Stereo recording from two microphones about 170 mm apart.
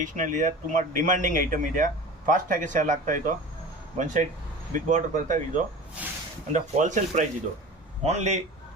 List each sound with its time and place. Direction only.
0.0 s speech: 50° right (ahead or behind)
6.0 s speech: 10° right (ahead or behind)
6.5 s a man's voice: 45° right (ahead or behind)